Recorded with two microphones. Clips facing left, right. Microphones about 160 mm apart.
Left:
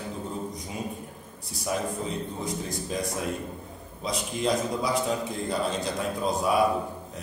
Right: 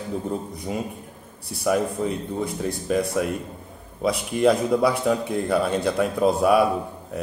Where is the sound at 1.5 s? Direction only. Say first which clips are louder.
Right 7 dB; 60° right (ahead or behind).